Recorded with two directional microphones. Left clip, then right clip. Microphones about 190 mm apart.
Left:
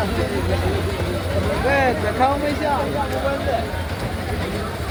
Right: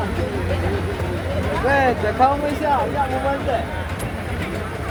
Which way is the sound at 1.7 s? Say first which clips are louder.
Right 2 dB; 35° right (ahead or behind).